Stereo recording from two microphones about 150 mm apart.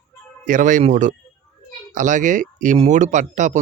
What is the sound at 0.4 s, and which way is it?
Speech, 60° right (ahead or behind).